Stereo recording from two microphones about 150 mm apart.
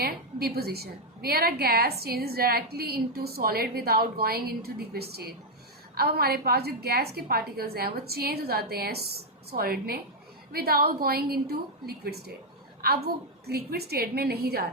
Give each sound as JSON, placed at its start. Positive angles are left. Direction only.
{"t": 0.0, "sound": "a woman's voice", "side_deg": -90}